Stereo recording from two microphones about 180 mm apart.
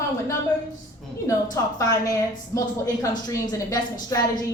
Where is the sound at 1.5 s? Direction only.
20° left (ahead or behind).